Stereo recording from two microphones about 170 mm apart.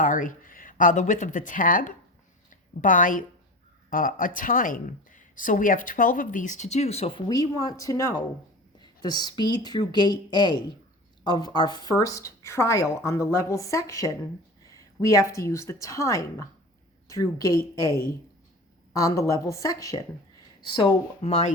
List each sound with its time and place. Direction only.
0.0 s a woman's voice: 50° left (ahead or behind); by 17.6 s 20° left (ahead or behind)
18.9 s speech: 20° left (ahead or behind)
20.7 s speech: 30° left (ahead or behind)